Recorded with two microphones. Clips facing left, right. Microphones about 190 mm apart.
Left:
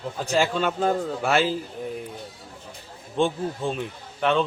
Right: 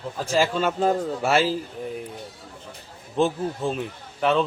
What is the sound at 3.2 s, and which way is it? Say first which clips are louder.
A man's voice: right 1 dB; centre (ahead or behind).